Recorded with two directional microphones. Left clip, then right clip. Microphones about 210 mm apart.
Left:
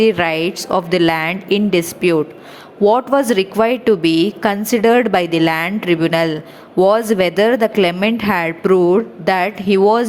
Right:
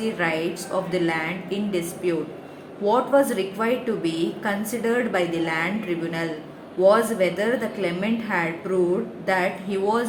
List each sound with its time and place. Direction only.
0.0 s a woman's voice: 45° left (ahead or behind)